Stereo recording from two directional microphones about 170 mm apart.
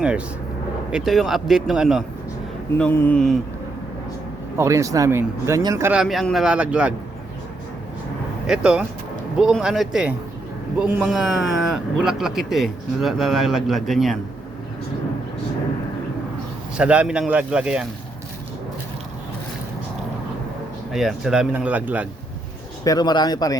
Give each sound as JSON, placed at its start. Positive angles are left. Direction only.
{"t": 0.9, "sound": "a man's voice", "side_deg": -5}
{"t": 2.7, "sound": "speech", "side_deg": 10}
{"t": 4.5, "sound": "speech", "side_deg": -15}
{"t": 8.4, "sound": "a man's voice", "side_deg": -5}
{"t": 16.7, "sound": "a man's voice", "side_deg": -5}
{"t": 20.9, "sound": "speech", "side_deg": 0}
{"t": 22.8, "sound": "speech", "side_deg": 20}